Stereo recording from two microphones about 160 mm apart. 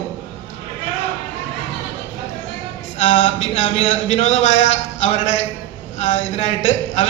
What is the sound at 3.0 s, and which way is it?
A man's voice, 50° left (ahead or behind).